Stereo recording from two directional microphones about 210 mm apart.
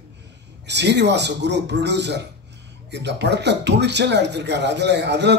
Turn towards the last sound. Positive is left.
turn(degrees=-55)  # may be behind; listen again after turning